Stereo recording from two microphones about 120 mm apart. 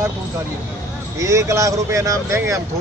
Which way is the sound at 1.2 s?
25° right (ahead or behind).